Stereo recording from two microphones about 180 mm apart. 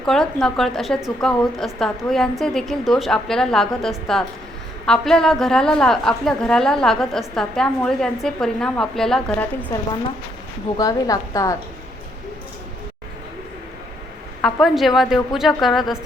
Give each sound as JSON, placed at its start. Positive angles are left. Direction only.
{"t": 0.0, "sound": "a woman's voice", "side_deg": 0}
{"t": 10.8, "sound": "a woman's voice", "side_deg": 20}
{"t": 14.4, "sound": "a woman's voice", "side_deg": 0}